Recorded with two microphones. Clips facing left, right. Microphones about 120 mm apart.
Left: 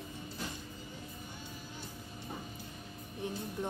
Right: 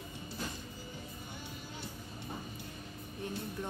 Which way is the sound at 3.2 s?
20° left (ahead or behind).